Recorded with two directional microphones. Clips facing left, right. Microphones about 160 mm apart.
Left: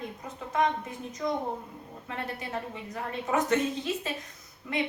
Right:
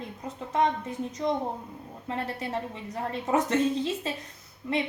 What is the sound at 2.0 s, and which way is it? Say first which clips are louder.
A woman's voice: right 4 dB; 30° right (ahead or behind).